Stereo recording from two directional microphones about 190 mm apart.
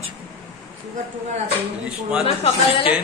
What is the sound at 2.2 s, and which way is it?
Speech, 30° left (ahead or behind).